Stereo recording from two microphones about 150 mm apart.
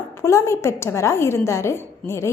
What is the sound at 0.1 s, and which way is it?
A woman's voice, 20° left (ahead or behind).